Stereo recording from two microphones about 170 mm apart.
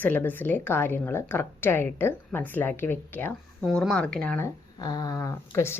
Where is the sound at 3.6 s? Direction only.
Centre (ahead or behind).